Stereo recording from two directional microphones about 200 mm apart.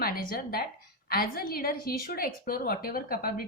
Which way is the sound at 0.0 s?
45° left (ahead or behind).